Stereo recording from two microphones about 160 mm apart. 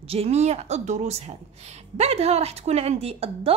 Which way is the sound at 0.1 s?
40° right (ahead or behind).